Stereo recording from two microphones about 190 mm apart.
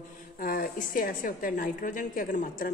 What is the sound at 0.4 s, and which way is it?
Speech, 50° left (ahead or behind).